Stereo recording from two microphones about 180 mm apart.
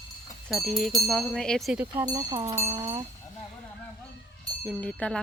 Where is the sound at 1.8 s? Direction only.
15° right (ahead or behind).